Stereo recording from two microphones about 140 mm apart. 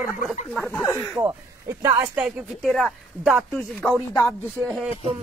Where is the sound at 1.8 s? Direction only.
25° right (ahead or behind).